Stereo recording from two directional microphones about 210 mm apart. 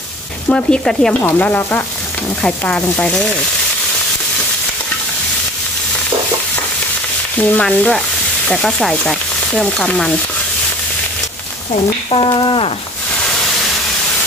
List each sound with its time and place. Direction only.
0.5 s stir: 5° left (ahead or behind)
7.3 s stir: 5° left (ahead or behind)
12.1 s speech: 25° left (ahead or behind)